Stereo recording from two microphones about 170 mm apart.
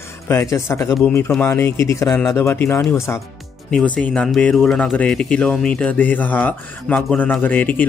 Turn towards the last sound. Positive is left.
turn(degrees=10)  # may be behind; listen again after turning